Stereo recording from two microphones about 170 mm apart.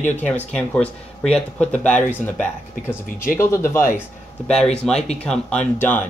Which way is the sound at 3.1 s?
55° left (ahead or behind).